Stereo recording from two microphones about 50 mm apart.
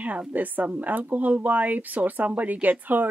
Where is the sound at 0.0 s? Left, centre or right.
Right.